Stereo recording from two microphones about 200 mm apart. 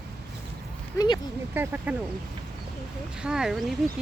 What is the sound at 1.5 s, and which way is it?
Speech, 10° right (ahead or behind).